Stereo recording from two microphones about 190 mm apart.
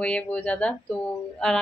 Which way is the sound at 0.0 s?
5° left (ahead or behind).